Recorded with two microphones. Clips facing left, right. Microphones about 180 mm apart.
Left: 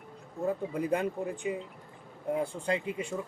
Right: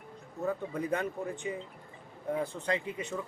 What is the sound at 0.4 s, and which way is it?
Speech, 10° left (ahead or behind).